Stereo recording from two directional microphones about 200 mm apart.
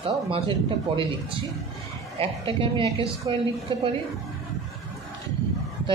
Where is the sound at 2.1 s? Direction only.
25° right (ahead or behind).